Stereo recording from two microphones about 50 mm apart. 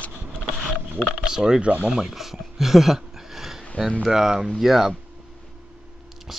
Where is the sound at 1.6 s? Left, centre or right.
Right.